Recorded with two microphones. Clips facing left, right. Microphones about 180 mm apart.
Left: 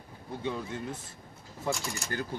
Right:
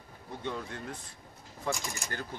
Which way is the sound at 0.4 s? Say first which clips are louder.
Left 3 dB; 5° left (ahead or behind).